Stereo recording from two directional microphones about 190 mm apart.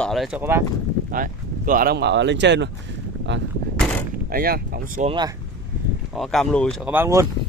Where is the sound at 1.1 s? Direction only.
45° right (ahead or behind); by 3.4 s 75° right (ahead or behind).